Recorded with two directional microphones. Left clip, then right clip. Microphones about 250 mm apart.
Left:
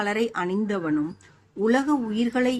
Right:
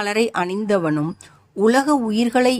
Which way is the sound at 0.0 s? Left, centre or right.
Right.